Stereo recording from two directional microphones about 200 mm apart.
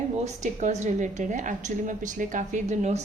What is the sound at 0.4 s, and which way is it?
A woman's voice, 35° right (ahead or behind).